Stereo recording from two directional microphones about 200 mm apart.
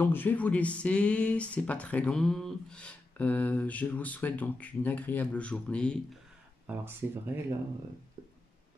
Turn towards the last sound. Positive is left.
turn(degrees=-10)  # may be behind; listen again after turning